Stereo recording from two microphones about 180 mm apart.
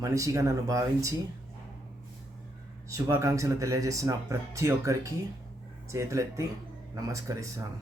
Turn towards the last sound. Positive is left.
turn(degrees=-15)  # may be behind; listen again after turning